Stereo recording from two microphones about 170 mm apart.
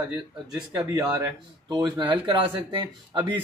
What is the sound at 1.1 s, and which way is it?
Speech, 25° right (ahead or behind).